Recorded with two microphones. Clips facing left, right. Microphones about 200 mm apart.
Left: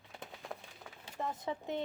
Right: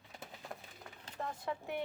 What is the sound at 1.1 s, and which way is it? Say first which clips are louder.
Speech: left 2 dB; 20° left (ahead or behind).